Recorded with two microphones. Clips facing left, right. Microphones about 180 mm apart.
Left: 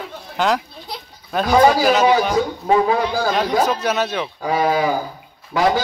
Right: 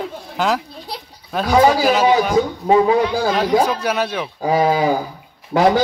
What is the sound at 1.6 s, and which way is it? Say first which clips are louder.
Speech: even; 10° right (ahead or behind).